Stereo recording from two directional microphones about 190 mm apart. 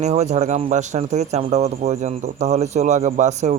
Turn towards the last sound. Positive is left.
turn(degrees=-40)  # may be behind; listen again after turning